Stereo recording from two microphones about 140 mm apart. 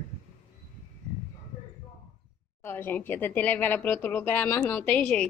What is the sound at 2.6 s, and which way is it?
A woman's voice, 15° left (ahead or behind).